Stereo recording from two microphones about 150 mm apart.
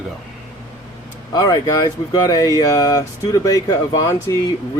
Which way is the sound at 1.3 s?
25° left (ahead or behind).